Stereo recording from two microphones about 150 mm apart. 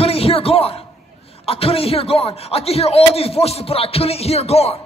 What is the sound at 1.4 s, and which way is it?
A man's voice, 40° left (ahead or behind).